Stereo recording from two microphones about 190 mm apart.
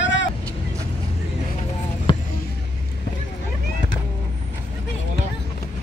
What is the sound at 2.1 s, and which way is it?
Basketball bounce, 25° left (ahead or behind).